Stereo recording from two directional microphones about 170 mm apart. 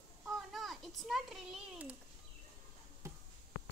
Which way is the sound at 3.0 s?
15° right (ahead or behind).